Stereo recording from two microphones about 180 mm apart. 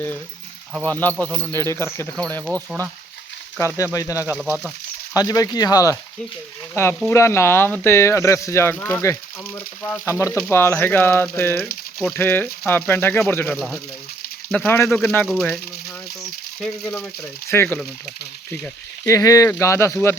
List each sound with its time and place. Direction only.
0.9 s speech: 10° left (ahead or behind)
3.9 s speech: 20° left (ahead or behind)
4.4 s speech: 10° right (ahead or behind)
5.1 s speech: 20° left (ahead or behind); by 15.6 s 5° left (ahead or behind)
16.8 s speech: 10° left (ahead or behind)